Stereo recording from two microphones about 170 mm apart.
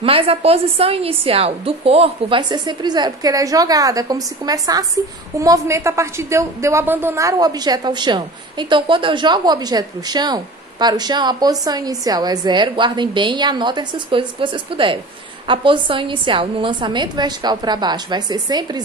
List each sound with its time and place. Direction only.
0.0 s a woman's voice: 35° right (ahead or behind)